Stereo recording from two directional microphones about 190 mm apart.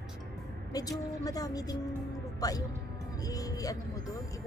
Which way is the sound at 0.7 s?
20° left (ahead or behind).